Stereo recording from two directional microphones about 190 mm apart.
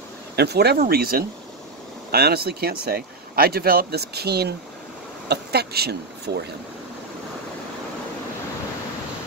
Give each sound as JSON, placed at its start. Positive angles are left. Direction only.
{"t": 0.4, "sound": "speech", "side_deg": -60}